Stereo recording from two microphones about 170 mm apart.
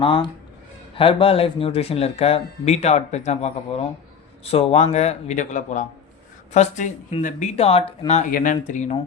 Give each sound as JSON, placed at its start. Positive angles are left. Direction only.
{"t": 0.0, "sound": "speech", "side_deg": 30}
{"t": 8.3, "sound": "speech", "side_deg": 50}